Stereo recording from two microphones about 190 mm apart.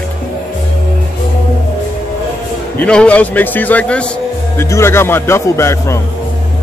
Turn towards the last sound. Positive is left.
turn(degrees=15)  # may be behind; listen again after turning